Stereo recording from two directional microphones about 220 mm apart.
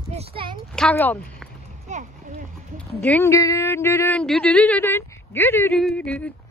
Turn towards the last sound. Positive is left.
turn(degrees=5)  # may be behind; listen again after turning